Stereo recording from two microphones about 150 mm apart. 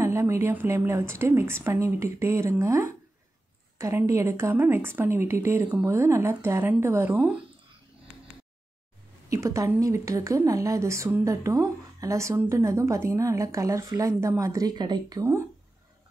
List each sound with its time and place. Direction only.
0.0 s a woman's voice: 20° right (ahead or behind)
9.3 s a woman's voice: 20° right (ahead or behind)